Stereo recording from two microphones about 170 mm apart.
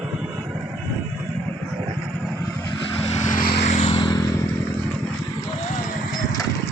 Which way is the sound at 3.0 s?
45° left (ahead or behind).